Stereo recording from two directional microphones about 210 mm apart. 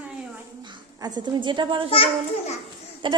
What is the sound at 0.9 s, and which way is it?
Speech, 20° right (ahead or behind).